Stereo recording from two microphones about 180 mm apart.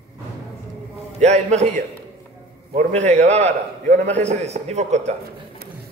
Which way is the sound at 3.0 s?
40° right (ahead or behind).